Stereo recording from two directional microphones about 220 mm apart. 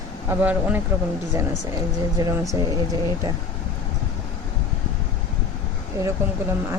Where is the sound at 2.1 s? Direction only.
15° right (ahead or behind).